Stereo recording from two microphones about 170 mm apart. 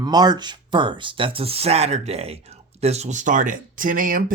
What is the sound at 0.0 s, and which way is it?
Speech, 25° right (ahead or behind).